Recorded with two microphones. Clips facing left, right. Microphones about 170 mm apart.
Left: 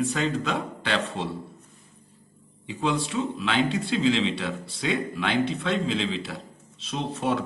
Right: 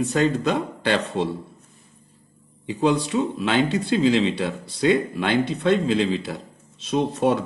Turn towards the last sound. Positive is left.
turn(degrees=-45)  # may be behind; listen again after turning